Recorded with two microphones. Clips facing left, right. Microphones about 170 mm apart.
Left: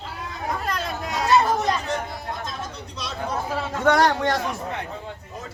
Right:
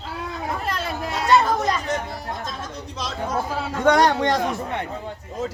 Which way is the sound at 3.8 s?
20° right (ahead or behind).